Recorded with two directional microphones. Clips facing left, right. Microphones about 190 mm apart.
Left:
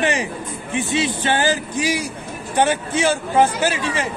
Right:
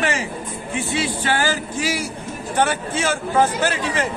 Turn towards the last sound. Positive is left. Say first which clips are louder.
# even
turn(degrees=10)  # may be behind; listen again after turning